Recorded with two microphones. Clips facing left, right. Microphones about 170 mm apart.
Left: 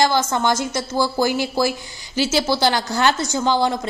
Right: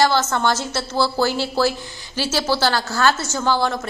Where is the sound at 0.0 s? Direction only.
15° left (ahead or behind).